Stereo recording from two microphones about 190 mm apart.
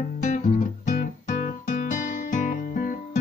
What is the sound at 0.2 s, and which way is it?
Guitar, 40° left (ahead or behind).